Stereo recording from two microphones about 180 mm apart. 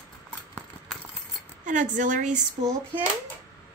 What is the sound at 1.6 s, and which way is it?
Speech, 45° right (ahead or behind).